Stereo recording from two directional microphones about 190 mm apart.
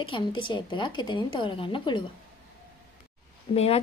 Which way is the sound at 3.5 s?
30° left (ahead or behind).